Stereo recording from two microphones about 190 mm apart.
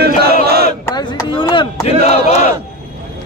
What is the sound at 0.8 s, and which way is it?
Chop, 20° left (ahead or behind).